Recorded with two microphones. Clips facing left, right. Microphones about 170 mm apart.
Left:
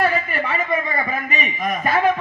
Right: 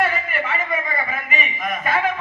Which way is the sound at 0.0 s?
35° left (ahead or behind).